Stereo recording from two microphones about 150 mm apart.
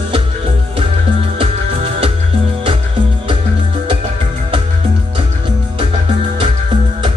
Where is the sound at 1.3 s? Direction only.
40° right (ahead or behind).